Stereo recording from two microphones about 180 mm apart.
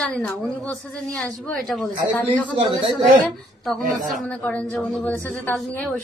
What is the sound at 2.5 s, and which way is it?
Speech, 30° right (ahead or behind).